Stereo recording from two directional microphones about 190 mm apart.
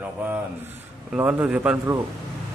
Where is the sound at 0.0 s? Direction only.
10° right (ahead or behind).